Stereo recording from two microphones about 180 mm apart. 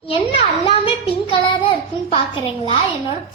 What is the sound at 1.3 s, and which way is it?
Child singing, 25° left (ahead or behind).